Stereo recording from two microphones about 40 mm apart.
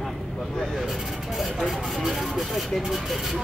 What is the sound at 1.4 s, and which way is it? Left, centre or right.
Speech, centre.